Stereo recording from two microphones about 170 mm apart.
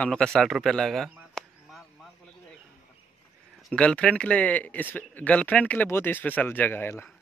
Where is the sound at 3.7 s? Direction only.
5° left (ahead or behind).